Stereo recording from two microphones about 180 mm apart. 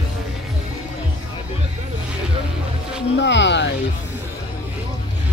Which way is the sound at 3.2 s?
75° left (ahead or behind).